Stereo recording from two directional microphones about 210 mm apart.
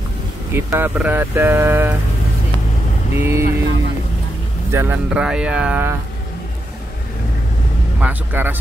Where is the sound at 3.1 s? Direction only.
15° right (ahead or behind).